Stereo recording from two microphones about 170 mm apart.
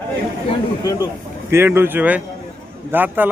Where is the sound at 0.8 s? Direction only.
25° left (ahead or behind).